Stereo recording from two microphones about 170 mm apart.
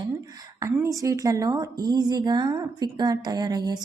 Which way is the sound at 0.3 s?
20° right (ahead or behind).